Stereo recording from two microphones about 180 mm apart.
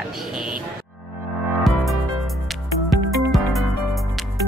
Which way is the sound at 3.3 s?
Centre (ahead or behind).